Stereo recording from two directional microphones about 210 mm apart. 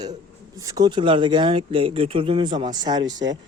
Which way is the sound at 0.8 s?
20° right (ahead or behind).